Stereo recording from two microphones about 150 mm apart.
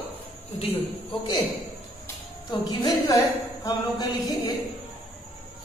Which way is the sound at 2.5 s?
30° left (ahead or behind).